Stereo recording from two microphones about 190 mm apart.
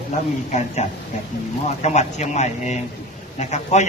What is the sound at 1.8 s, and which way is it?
A man's voice, 35° left (ahead or behind).